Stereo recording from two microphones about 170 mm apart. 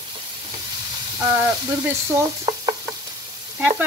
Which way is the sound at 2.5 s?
20° right (ahead or behind).